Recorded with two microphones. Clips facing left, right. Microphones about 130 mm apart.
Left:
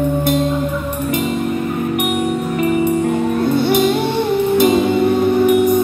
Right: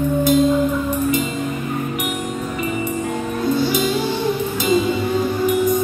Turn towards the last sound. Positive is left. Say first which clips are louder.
# left 5 dB
turn(degrees=60)  # may be behind; listen again after turning